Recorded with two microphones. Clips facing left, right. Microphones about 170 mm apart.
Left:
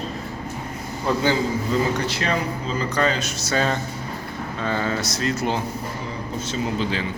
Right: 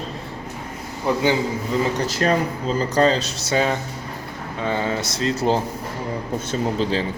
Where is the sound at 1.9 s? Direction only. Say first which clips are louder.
Right 4 dB; 45° right (ahead or behind).